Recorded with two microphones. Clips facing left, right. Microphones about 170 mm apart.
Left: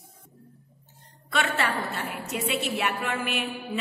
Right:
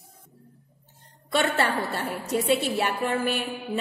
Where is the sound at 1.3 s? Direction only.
35° right (ahead or behind).